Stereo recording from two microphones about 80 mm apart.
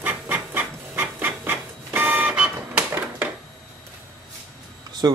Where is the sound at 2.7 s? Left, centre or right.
Right.